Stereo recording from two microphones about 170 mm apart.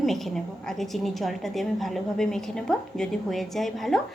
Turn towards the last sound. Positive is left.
turn(degrees=0)  # may be behind; listen again after turning